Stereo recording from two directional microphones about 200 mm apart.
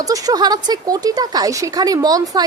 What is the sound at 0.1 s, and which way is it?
A woman's voice, 20° right (ahead or behind).